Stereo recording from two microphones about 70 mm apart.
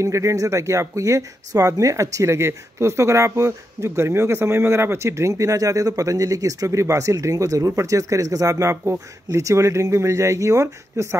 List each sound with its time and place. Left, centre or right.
0.0 s speech: right